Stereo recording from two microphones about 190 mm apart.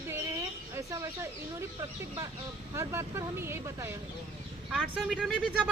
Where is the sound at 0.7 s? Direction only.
15° right (ahead or behind).